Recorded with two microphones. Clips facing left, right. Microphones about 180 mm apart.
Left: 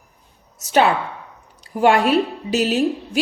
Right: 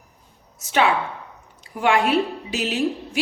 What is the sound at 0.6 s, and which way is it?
A woman's voice, 40° left (ahead or behind).